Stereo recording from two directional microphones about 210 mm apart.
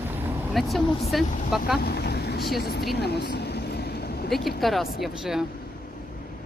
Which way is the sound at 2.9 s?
50° left (ahead or behind).